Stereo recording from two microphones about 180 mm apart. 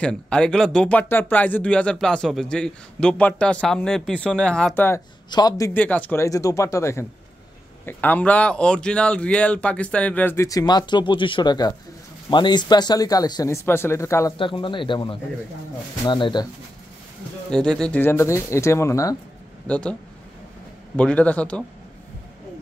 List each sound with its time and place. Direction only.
0.0 s speech: 5° left (ahead or behind)
14.4 s speech: 30° left (ahead or behind)
17.5 s speech: 5° left (ahead or behind)
19.7 s speech: 5° left (ahead or behind)